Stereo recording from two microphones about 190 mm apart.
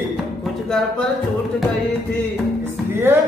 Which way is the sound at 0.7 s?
5° left (ahead or behind).